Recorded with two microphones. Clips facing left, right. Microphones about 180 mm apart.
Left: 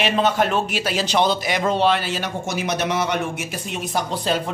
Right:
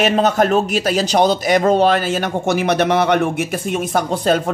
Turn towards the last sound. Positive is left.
turn(degrees=-50)  # may be behind; listen again after turning